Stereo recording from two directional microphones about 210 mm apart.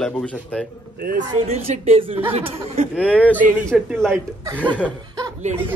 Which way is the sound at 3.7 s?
5° right (ahead or behind).